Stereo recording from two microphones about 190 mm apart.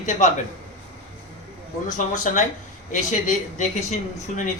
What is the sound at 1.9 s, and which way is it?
Speech, 40° left (ahead or behind).